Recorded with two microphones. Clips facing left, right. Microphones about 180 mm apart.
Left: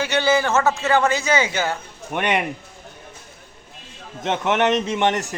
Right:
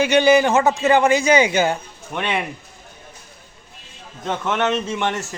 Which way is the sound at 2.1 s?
15° left (ahead or behind).